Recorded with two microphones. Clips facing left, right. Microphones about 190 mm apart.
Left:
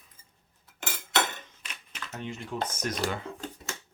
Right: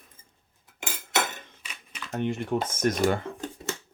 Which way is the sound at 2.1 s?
55° right (ahead or behind).